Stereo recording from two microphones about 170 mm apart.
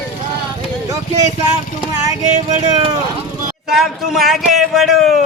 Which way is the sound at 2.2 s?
45° right (ahead or behind).